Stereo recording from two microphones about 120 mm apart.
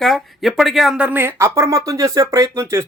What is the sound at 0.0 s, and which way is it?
A man's voice, centre (ahead or behind).